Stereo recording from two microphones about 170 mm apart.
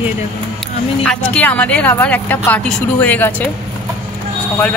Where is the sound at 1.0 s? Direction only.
5° left (ahead or behind).